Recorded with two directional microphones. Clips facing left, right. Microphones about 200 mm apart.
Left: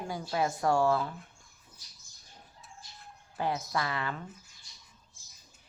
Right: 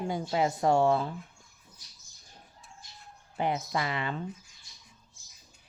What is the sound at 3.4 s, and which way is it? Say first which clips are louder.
Speech: right 2 dB; 20° right (ahead or behind).